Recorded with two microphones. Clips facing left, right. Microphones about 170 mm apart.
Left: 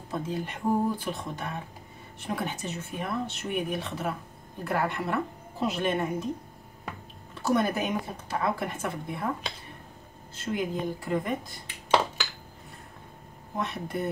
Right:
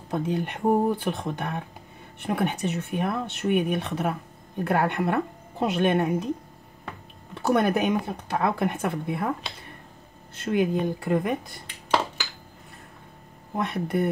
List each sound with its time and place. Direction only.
0.1 s speech: 65° right (ahead or behind)
7.3 s speech: 65° right (ahead or behind)
10.3 s speech: 60° right (ahead or behind)
13.6 s speech: 65° right (ahead or behind)